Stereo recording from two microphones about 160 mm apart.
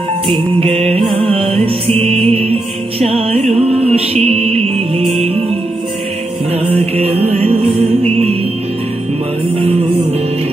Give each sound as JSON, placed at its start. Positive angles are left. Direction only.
{"t": 0.3, "sound": "music", "side_deg": -35}
{"t": 6.7, "sound": "music", "side_deg": -40}